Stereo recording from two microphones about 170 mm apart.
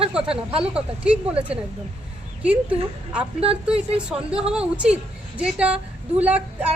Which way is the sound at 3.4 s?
35° right (ahead or behind).